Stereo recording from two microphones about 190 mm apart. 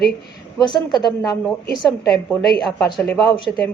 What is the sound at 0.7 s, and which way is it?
Speech, 20° left (ahead or behind).